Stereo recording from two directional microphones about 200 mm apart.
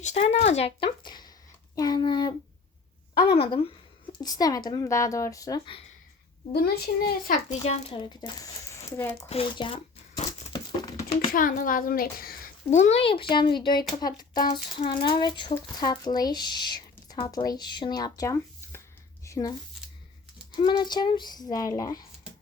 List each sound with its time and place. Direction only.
0.0 s a woman's voice: 35° left (ahead or behind)
6.5 s a child's voice: 50° left (ahead or behind)
7.6 s a woman's voice: 30° left (ahead or behind)
9.3 s a woman's voice: 25° left (ahead or behind)
10.5 s a sound: 20° left (ahead or behind)
11.3 s a child's voice: 45° left (ahead or behind)
12.7 s a woman's voice: 35° left (ahead or behind); by 18.8 s 15° left (ahead or behind)
19.2 s a sound: 15° left (ahead or behind)
20.5 s a woman's voice: 20° left (ahead or behind)